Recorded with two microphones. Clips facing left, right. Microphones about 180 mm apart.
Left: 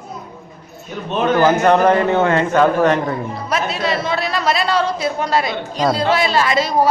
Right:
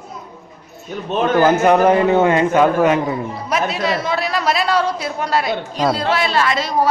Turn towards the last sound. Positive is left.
turn(degrees=5)  # may be behind; listen again after turning